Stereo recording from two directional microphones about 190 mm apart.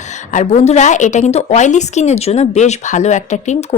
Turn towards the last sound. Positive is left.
turn(degrees=40)  # may be behind; listen again after turning